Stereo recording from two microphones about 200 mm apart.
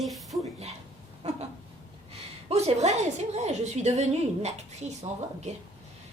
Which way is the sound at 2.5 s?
35° right (ahead or behind).